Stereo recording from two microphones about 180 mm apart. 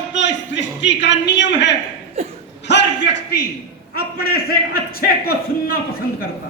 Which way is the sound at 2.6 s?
75° left (ahead or behind).